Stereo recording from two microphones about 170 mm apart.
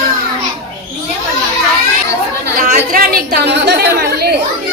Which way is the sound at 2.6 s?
60° right (ahead or behind).